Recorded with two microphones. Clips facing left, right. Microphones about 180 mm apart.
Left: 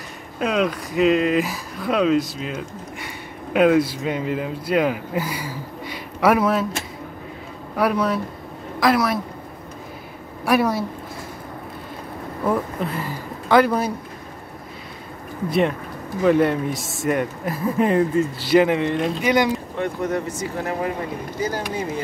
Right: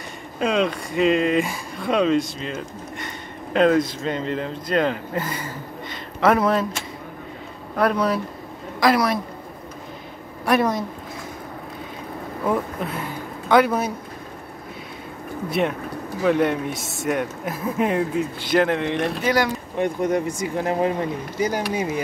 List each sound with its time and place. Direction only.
0.4 s speech: 5° left (ahead or behind)
7.7 s a woman's voice: 5° left (ahead or behind)
10.4 s speech: 5° left (ahead or behind)
12.4 s speech: centre (ahead or behind)
16.2 s speech: centre (ahead or behind)
19.2 s speech: 20° left (ahead or behind)
19.8 s speech: 15° right (ahead or behind)